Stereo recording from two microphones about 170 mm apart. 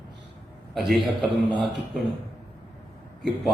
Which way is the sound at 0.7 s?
Centre (ahead or behind).